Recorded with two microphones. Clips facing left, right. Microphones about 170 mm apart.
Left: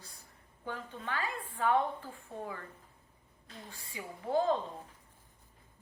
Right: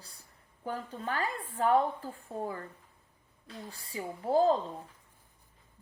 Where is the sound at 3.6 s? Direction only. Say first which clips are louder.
Right 6 dB; 35° right (ahead or behind).